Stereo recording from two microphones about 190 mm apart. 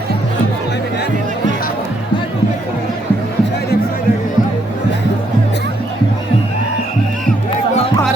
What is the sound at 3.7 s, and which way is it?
Music, 55° left (ahead or behind).